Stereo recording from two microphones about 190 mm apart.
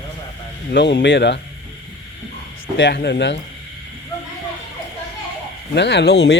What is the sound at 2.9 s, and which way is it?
Speech, 60° left (ahead or behind).